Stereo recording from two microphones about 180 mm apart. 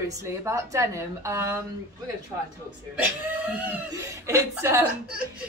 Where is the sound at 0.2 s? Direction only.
15° right (ahead or behind).